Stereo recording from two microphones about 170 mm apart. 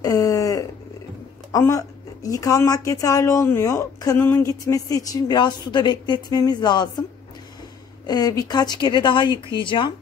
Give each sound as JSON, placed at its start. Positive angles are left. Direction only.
{"t": 0.0, "sound": "a sound", "side_deg": 20}
{"t": 1.5, "sound": "speech", "side_deg": 20}
{"t": 8.1, "sound": "speech", "side_deg": 20}